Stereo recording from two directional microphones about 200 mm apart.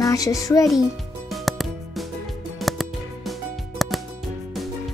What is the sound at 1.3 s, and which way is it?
Music, centre (ahead or behind).